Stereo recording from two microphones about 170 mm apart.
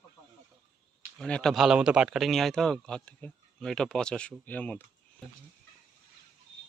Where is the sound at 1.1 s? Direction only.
5° left (ahead or behind).